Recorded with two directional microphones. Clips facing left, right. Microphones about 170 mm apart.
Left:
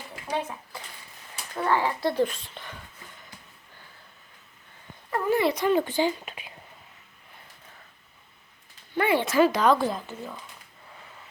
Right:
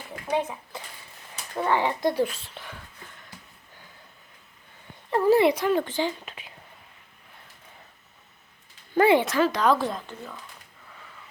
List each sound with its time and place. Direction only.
0.3 s a sound: 20° right (ahead or behind)
1.5 s speech: 20° right (ahead or behind)
5.1 s a sound: 30° right (ahead or behind)
5.5 s a woman's voice: centre (ahead or behind)
5.8 s speech: 10° left (ahead or behind)
9.2 s a woman's voice: 10° left (ahead or behind)